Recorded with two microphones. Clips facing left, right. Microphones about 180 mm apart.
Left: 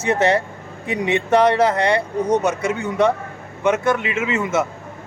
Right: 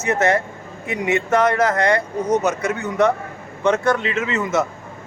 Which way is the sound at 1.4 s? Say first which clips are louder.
Left 3 dB; 30° left (ahead or behind).